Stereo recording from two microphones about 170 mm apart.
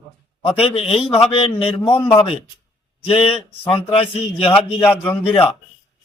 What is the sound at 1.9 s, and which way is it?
Speech, 10° left (ahead or behind).